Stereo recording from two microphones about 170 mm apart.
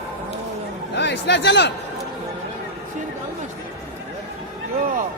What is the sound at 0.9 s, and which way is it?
Speech, 90° left.